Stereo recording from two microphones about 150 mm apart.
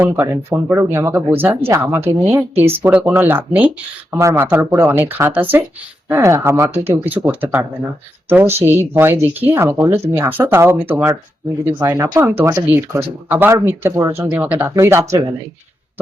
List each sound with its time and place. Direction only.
0.0 s speech: 15° right (ahead or behind)